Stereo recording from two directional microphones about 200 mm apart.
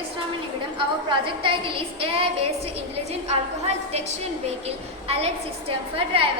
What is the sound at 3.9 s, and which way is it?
A woman's voice, 30° right (ahead or behind).